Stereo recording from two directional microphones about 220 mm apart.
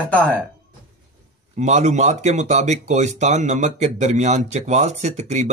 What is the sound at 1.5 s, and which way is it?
Speech, 30° right (ahead or behind).